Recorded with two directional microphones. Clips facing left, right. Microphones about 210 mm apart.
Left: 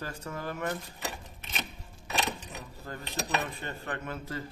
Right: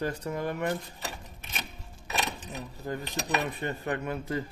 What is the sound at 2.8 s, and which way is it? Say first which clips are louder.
A man's voice: right 3 dB; 15° right (ahead or behind).